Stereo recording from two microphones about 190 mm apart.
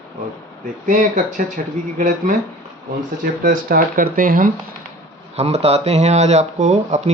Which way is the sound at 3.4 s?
45° right (ahead or behind).